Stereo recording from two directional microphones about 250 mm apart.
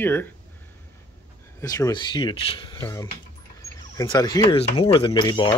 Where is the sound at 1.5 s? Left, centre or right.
Centre.